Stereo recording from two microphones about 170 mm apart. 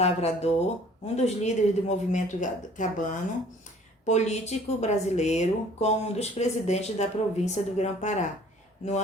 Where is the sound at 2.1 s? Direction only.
50° left (ahead or behind).